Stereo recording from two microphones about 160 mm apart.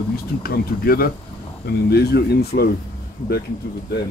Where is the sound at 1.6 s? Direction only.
90° left.